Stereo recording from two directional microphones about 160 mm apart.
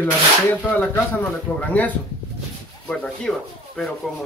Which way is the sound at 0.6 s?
10° left (ahead or behind).